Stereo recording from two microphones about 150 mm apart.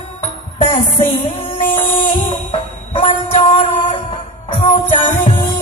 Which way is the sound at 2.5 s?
45° left (ahead or behind).